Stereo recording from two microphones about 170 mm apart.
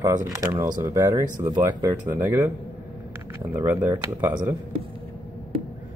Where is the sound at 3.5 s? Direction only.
10° right (ahead or behind).